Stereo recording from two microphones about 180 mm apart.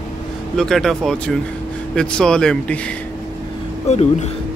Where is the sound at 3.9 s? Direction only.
35° left (ahead or behind).